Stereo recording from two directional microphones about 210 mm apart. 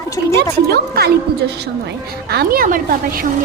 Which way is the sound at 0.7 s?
50° right (ahead or behind).